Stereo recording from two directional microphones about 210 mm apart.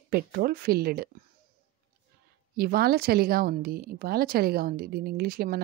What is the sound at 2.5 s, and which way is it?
A woman's voice, 45° right (ahead or behind).